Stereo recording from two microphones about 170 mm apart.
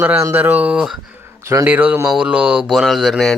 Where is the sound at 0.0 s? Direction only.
15° right (ahead or behind).